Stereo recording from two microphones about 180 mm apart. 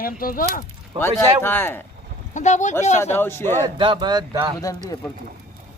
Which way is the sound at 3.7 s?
25° right (ahead or behind).